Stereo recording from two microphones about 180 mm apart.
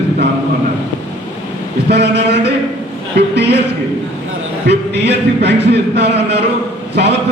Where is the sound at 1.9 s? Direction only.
70° right (ahead or behind).